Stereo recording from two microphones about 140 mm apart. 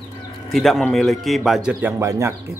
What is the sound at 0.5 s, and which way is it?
Speech, centre (ahead or behind).